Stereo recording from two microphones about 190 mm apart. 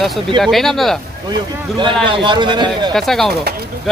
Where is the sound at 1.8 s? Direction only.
25° right (ahead or behind).